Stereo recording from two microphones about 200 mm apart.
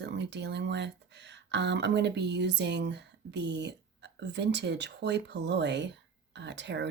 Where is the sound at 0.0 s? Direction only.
60° right (ahead or behind).